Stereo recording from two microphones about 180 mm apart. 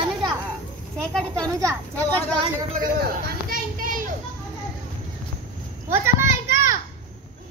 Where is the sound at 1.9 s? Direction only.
10° left (ahead or behind).